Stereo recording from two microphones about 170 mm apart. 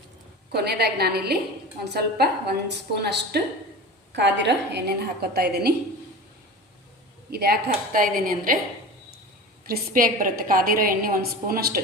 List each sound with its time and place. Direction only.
0.5 s a woman's voice: 70° right (ahead or behind)
4.1 s a woman's voice: 90° right; by 5.7 s 70° right (ahead or behind)
7.3 s a woman's voice: 65° right (ahead or behind)
9.6 s a woman's voice: 60° right (ahead or behind)